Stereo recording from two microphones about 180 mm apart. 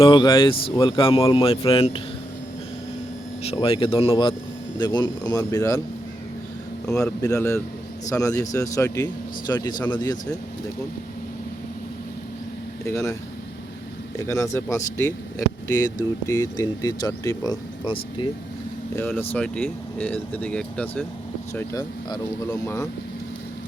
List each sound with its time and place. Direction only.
0.0 s speech: 25° left (ahead or behind)
3.4 s speech: 30° left (ahead or behind)
6.8 s speech: 20° left (ahead or behind)
12.8 s speech: 15° left (ahead or behind)
14.2 s speech: 15° left (ahead or behind)
18.9 s speech: 10° left (ahead or behind)